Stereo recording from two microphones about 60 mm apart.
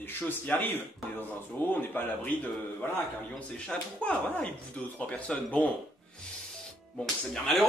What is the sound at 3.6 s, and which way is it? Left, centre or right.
Speech, centre.